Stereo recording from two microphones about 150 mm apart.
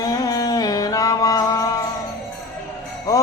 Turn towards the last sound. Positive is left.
turn(degrees=25)  # may be behind; listen again after turning